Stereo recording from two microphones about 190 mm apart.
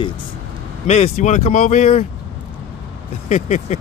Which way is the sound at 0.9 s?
35° left (ahead or behind).